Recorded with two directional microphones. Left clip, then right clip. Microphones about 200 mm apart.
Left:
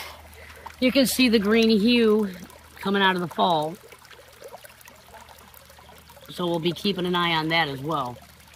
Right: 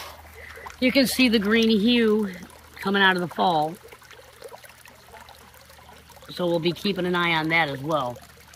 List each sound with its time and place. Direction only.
0.7 s speech: 15° left (ahead or behind)
6.4 s speech: 15° left (ahead or behind)